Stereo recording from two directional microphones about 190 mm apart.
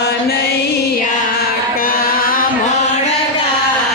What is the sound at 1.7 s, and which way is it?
Music, 50° left (ahead or behind).